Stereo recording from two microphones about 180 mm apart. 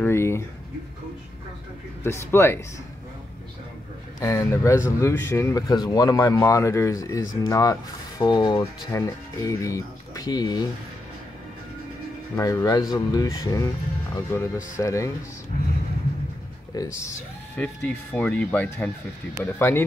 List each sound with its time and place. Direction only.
0.0 s a sound: 15° left (ahead or behind)
2.0 s speech: 15° left (ahead or behind)
4.2 s speech: 15° left (ahead or behind)
12.4 s speech: 20° left (ahead or behind)
16.7 s speech: 20° left (ahead or behind)
17.6 s speech: 5° left (ahead or behind)